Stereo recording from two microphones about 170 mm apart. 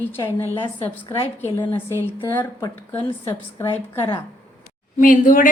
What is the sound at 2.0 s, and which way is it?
A woman's voice, 15° left (ahead or behind).